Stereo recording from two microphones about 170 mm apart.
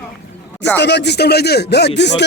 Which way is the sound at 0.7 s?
90° left.